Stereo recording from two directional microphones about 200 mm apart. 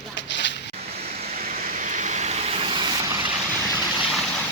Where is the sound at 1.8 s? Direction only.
35° right (ahead or behind); by 3.1 s 20° right (ahead or behind).